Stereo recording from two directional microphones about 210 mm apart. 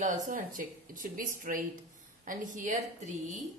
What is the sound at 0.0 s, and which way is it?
Speech, 40° right (ahead or behind).